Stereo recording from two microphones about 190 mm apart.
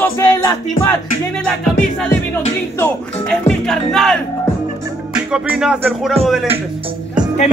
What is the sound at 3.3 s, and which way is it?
Music, 5° left (ahead or behind).